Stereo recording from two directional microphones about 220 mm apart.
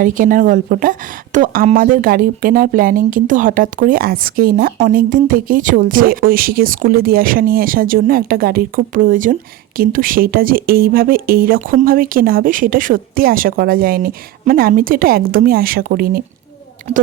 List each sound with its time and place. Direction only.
0.0 s a woman's voice: 40° right (ahead or behind)